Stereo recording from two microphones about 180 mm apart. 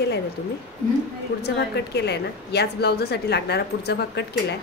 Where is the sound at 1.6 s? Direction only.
70° left (ahead or behind).